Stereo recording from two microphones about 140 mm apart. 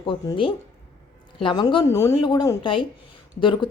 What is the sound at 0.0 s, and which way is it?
A woman's voice, 35° left (ahead or behind).